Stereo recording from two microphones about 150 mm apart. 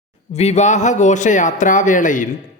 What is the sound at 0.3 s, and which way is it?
A man's voice, 45° left (ahead or behind).